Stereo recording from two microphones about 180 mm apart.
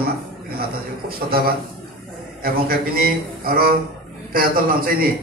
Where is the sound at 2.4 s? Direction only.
55° right (ahead or behind).